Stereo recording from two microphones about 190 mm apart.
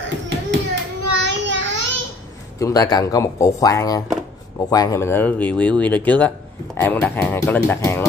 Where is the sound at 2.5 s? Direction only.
20° left (ahead or behind).